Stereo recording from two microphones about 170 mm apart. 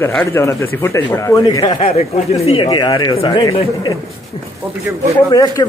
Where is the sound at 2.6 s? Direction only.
25° left (ahead or behind).